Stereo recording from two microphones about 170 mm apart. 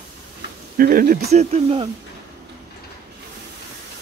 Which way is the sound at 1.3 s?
40° right (ahead or behind).